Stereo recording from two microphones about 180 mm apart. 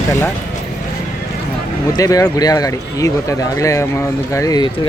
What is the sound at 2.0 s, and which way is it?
Speech, 20° left (ahead or behind).